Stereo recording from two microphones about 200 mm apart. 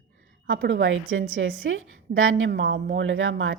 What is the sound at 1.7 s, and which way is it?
A woman's voice, 85° right.